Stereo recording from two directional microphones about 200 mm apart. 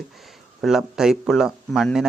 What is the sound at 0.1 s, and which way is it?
Speech, centre (ahead or behind).